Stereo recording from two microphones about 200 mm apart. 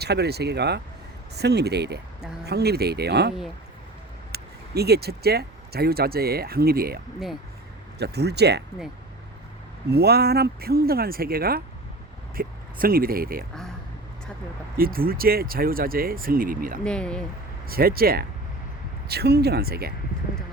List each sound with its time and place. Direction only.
0.0 s speech: 55° right (ahead or behind)
9.9 s speech: 55° right (ahead or behind)
14.8 s speech: 45° right (ahead or behind)
16.8 s speech: 5° left (ahead or behind)
17.7 s speech: 50° right (ahead or behind)